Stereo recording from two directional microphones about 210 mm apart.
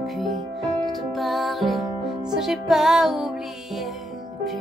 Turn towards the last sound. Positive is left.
turn(degrees=0)  # may be behind; listen again after turning